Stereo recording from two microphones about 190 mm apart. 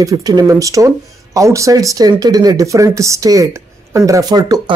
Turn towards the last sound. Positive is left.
turn(degrees=-20)  # may be behind; listen again after turning